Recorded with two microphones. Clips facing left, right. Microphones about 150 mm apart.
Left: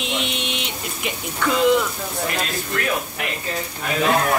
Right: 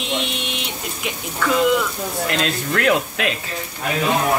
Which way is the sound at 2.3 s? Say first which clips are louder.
Right 4 dB; 80° right.